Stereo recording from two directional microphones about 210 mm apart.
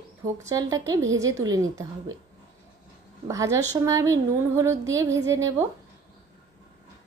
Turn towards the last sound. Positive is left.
turn(degrees=-15)  # may be behind; listen again after turning